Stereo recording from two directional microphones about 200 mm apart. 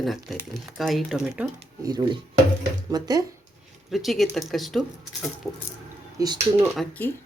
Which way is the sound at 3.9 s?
Centre (ahead or behind).